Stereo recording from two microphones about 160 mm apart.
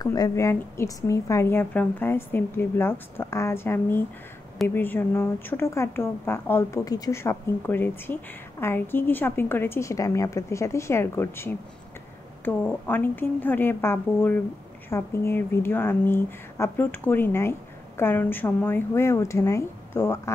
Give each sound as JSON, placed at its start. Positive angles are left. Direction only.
{"t": 0.0, "sound": "a woman's voice", "side_deg": 25}